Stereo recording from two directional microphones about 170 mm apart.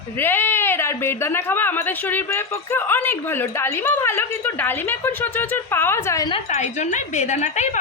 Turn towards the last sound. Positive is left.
turn(degrees=45)  # may be behind; listen again after turning